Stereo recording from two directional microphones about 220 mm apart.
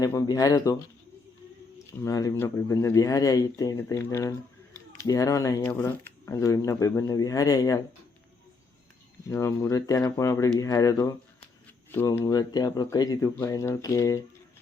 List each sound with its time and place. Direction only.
0.0 s speech: 15° left (ahead or behind)
2.0 s speech: 15° left (ahead or behind)
9.3 s speech: 10° left (ahead or behind)